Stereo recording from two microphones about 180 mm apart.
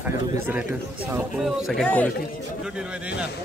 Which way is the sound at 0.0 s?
10° right (ahead or behind).